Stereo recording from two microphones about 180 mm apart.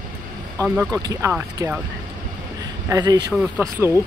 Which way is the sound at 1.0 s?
15° right (ahead or behind).